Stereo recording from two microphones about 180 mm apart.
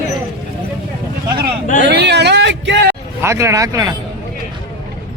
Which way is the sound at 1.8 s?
70° right (ahead or behind).